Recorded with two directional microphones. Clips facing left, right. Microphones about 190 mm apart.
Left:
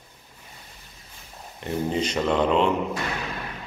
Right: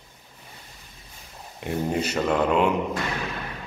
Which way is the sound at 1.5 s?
10° right (ahead or behind).